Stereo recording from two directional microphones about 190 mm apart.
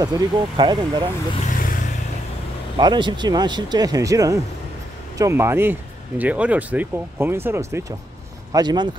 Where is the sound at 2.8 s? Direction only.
25° right (ahead or behind).